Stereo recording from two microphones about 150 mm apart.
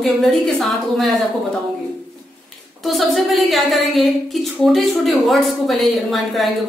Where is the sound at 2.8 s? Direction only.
Centre (ahead or behind).